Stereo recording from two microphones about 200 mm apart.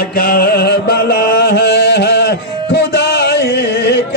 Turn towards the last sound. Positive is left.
turn(degrees=60)  # may be behind; listen again after turning